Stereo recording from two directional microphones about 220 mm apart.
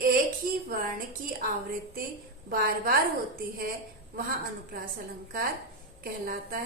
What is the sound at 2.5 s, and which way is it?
Speech, 40° right (ahead or behind).